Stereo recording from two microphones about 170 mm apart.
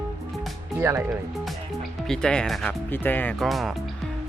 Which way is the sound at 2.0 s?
5° left (ahead or behind).